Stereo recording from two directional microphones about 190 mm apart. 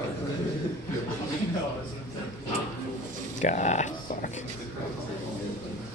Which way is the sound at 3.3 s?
40° left (ahead or behind).